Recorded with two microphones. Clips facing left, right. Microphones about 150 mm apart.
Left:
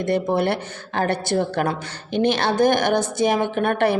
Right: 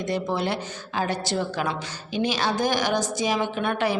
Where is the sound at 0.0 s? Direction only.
55° left (ahead or behind).